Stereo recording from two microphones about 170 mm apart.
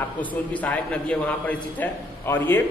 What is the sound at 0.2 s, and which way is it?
A man's voice, 10° left (ahead or behind).